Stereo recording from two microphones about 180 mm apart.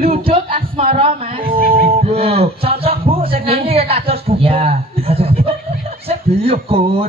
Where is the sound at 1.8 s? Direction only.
35° right (ahead or behind).